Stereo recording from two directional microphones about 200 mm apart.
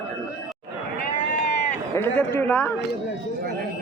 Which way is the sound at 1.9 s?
10° left (ahead or behind).